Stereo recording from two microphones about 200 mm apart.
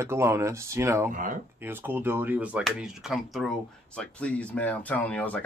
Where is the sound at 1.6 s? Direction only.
10° right (ahead or behind); by 5.4 s 5° left (ahead or behind).